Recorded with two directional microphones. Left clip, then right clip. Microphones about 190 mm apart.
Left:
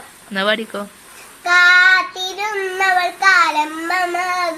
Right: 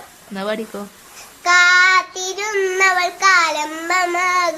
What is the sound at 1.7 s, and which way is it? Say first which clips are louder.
Child singing: left 2 dB; 15° right (ahead or behind).